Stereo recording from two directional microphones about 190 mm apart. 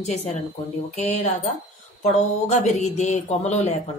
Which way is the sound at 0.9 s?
35° left (ahead or behind).